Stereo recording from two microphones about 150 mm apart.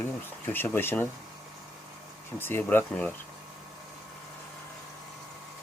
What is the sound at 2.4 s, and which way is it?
Speech, 15° left (ahead or behind).